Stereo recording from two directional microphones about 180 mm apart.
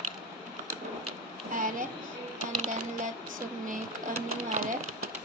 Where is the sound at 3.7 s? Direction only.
40° right (ahead or behind).